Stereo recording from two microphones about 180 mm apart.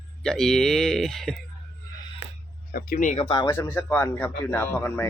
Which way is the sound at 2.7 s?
50° left (ahead or behind).